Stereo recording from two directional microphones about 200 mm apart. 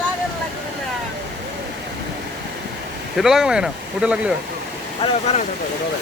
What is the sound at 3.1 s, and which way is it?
Speech, centre (ahead or behind).